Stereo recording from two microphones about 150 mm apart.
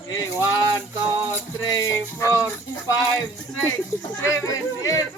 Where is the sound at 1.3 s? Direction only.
15° left (ahead or behind).